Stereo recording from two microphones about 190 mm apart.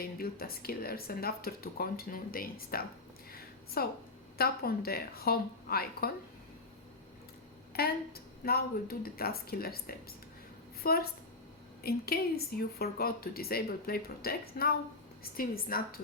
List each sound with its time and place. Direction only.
0.0 s a woman's voice: 50° left (ahead or behind)
3.3 s a sound: 55° left (ahead or behind)
4.4 s a woman's voice: 55° left (ahead or behind)
7.7 s a woman's voice: 55° left (ahead or behind)